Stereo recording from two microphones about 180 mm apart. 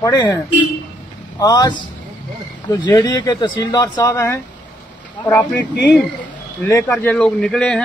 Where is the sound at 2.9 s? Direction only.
20° left (ahead or behind).